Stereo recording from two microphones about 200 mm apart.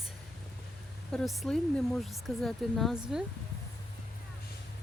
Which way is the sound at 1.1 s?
5° left (ahead or behind).